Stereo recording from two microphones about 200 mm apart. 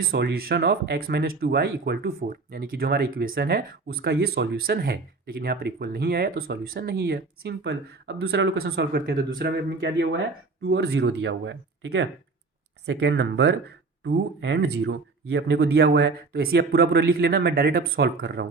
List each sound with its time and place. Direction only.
0.1 s speech: 50° right (ahead or behind)